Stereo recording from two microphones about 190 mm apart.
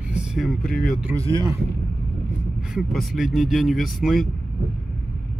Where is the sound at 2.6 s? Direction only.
Centre (ahead or behind).